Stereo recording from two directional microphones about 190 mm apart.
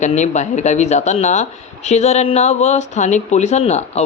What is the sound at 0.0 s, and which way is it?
A man's voice, 35° left (ahead or behind).